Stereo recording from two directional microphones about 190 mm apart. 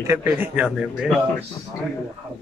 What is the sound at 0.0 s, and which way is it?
Speech, 10° right (ahead or behind).